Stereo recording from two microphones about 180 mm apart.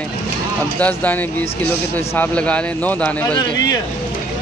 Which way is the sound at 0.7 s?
10° left (ahead or behind).